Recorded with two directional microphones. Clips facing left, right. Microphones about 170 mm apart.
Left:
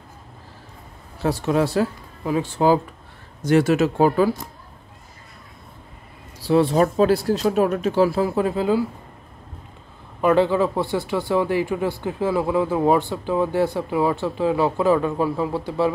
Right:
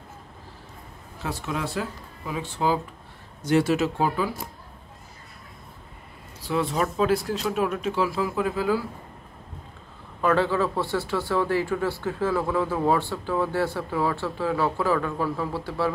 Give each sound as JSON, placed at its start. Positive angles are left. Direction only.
{"t": 1.2, "sound": "speech", "side_deg": 40}
{"t": 6.4, "sound": "speech", "side_deg": 35}
{"t": 10.2, "sound": "speech", "side_deg": 15}